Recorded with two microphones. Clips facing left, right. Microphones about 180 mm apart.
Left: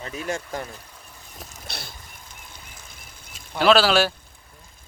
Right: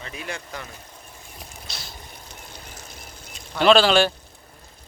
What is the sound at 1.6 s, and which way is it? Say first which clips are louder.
Vehicle: left 5 dB; 60° left (ahead or behind).